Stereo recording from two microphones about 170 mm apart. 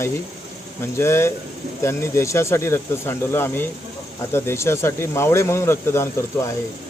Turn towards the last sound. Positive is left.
turn(degrees=15)  # may be behind; listen again after turning